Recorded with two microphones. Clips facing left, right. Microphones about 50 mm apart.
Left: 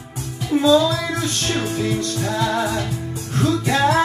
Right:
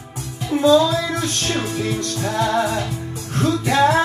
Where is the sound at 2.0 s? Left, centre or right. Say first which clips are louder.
Even; right.